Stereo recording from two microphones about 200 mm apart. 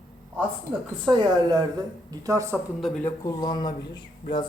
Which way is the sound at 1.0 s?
20° right (ahead or behind).